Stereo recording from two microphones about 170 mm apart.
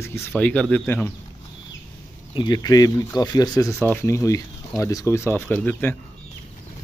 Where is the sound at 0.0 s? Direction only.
10° left (ahead or behind).